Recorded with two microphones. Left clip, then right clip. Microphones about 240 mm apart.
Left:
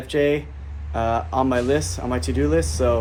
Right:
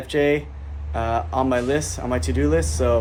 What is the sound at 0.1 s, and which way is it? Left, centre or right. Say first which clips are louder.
Speech: even; centre.